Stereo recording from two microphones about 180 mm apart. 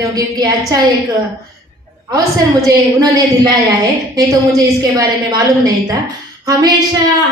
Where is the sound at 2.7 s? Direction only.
20° right (ahead or behind).